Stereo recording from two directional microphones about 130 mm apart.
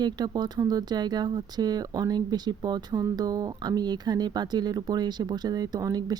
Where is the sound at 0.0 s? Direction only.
35° right (ahead or behind).